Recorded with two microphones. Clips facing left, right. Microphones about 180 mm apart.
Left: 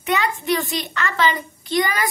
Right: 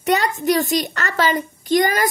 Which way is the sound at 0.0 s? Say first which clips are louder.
Right 4 dB; 40° right (ahead or behind).